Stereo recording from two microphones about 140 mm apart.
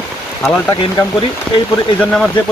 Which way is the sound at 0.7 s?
35° left (ahead or behind).